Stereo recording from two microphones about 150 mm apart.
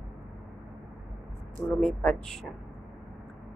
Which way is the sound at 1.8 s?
5° left (ahead or behind).